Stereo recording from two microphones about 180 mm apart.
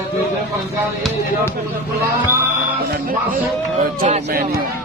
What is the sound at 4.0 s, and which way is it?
Speech, 50° right (ahead or behind).